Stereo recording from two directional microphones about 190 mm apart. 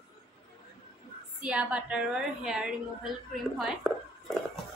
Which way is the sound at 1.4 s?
5° right (ahead or behind).